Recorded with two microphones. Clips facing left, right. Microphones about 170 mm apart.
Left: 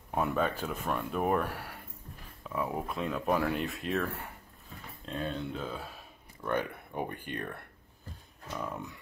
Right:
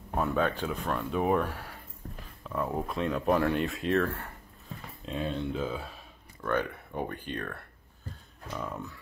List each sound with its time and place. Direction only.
0.1 s speech: 5° left (ahead or behind)
4.0 s speech: 10° left (ahead or behind)
5.0 s speech: centre (ahead or behind)
6.4 s speech: 10° left (ahead or behind)